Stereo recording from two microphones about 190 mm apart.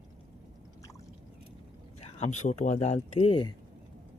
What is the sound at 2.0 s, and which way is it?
Speech, 35° left (ahead or behind).